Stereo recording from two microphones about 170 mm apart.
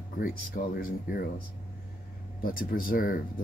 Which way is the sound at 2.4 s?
55° left (ahead or behind).